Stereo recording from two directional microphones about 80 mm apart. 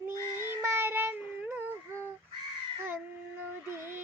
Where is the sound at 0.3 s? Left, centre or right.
Right.